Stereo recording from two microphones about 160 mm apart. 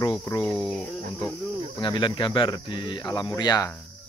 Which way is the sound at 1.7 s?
30° left (ahead or behind).